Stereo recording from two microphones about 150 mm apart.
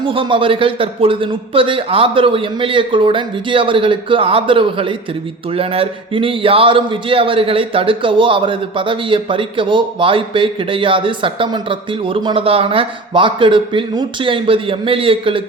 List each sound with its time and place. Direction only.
0.0 s speech: 35° right (ahead or behind)